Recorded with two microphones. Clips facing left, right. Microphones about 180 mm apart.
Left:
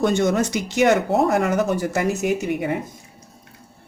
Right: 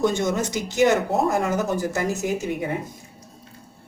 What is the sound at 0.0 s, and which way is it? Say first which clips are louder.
Speech: left 3 dB; 65° left (ahead or behind).